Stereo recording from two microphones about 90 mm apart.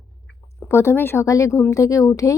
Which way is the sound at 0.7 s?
30° left (ahead or behind).